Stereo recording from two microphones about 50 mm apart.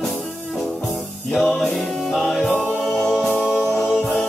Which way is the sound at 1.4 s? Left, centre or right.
Centre.